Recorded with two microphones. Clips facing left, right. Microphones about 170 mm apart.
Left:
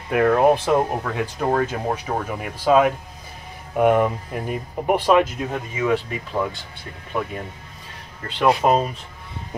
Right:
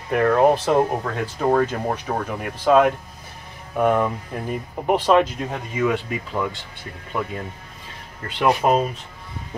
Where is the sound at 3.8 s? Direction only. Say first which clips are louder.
Left 2 dB; 15° left (ahead or behind).